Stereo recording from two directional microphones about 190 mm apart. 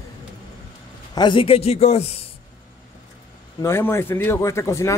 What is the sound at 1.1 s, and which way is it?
A man's voice, 25° left (ahead or behind).